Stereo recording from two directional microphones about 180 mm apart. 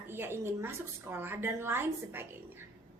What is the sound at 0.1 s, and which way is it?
A woman's voice, 10° right (ahead or behind).